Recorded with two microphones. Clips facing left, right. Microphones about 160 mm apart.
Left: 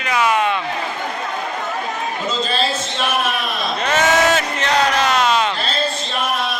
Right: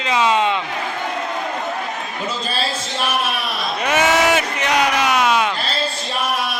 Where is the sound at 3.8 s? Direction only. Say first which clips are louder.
Even; 10° right (ahead or behind).